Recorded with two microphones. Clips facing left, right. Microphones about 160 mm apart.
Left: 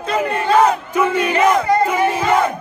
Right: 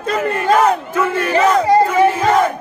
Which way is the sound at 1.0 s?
15° left (ahead or behind).